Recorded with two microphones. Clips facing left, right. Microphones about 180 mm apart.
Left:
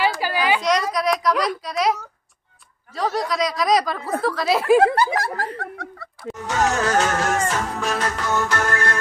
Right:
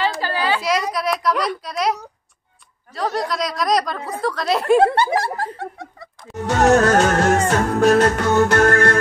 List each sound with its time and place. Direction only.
0.2 s a sound: 10° left (ahead or behind)
0.6 s a sound: 5° right (ahead or behind)
0.9 s speech: centre (ahead or behind)
4.9 s speech: 30° right (ahead or behind)
5.6 s snicker: 20° right (ahead or behind)
6.6 s music: 60° right (ahead or behind)